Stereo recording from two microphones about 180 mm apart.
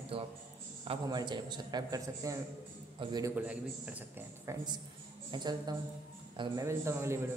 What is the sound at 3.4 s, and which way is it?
Speech, 5° right (ahead or behind).